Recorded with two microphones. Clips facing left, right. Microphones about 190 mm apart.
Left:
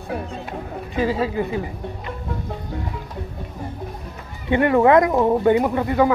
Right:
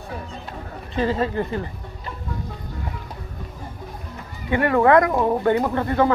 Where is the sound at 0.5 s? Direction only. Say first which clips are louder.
Left 5 dB; 10° left (ahead or behind).